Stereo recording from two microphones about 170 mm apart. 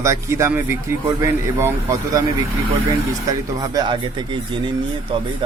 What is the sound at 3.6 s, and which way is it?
Speech, 25° right (ahead or behind).